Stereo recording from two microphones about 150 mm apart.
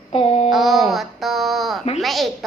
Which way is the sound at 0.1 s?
45° left (ahead or behind).